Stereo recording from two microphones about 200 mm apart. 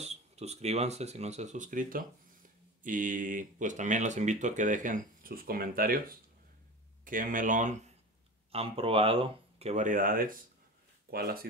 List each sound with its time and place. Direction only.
0.0 s speech: 35° right (ahead or behind); by 11.4 s 50° right (ahead or behind)